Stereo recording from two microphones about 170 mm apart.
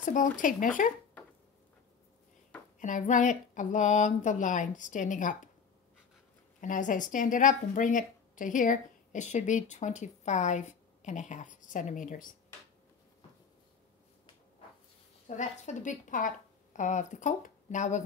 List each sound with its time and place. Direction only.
0.0 s a woman's voice: 50° left (ahead or behind)
2.8 s a woman's voice: 45° left (ahead or behind)
6.6 s a woman's voice: 50° left (ahead or behind)
15.2 s a woman's voice: 45° left (ahead or behind)